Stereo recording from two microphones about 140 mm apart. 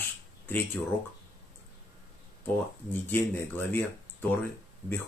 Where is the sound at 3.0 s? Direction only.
15° left (ahead or behind).